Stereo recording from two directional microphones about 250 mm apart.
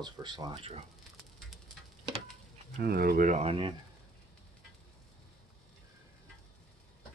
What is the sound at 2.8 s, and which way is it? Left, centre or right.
Speech, right.